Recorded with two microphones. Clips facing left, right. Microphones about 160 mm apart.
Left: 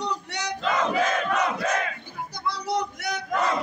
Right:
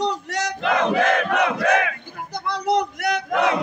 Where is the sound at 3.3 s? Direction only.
70° right (ahead or behind).